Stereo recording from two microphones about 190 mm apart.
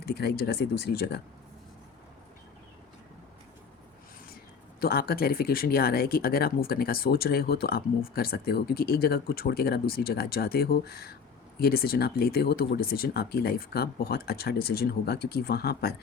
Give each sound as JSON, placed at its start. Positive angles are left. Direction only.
{"t": 0.1, "sound": "speech", "side_deg": 55}
{"t": 4.8, "sound": "speech", "side_deg": 50}